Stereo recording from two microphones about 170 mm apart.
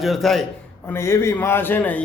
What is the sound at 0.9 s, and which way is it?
A man's voice, 15° left (ahead or behind).